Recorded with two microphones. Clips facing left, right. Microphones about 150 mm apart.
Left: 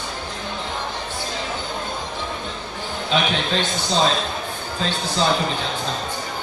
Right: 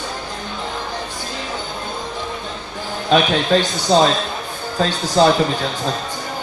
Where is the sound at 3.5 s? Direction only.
45° right (ahead or behind).